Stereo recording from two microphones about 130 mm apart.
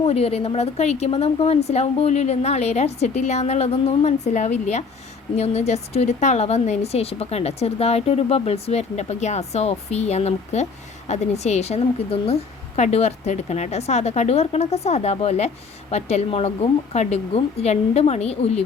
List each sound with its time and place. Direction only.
0.0 s a woman's voice: 50° left (ahead or behind)